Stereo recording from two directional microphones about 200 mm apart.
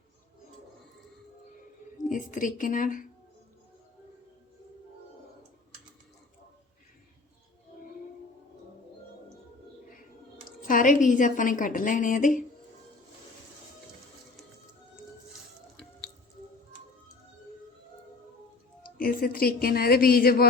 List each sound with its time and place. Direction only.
2.0 s speech: 40° left (ahead or behind)
10.7 s a woman's voice: 40° left (ahead or behind)
18.9 s speech: 45° left (ahead or behind)